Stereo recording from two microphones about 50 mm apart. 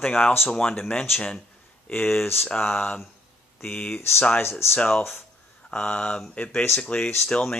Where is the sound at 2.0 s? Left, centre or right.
Left.